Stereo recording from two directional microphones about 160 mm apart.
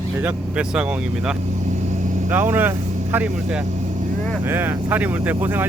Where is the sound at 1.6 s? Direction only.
50° right (ahead or behind).